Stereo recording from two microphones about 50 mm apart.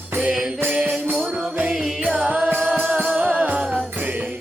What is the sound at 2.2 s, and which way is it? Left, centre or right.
Music, right.